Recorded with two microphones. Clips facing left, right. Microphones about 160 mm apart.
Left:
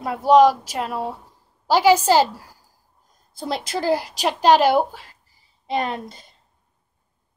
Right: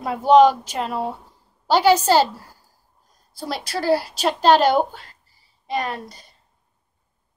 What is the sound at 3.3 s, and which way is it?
Speech, 20° left (ahead or behind).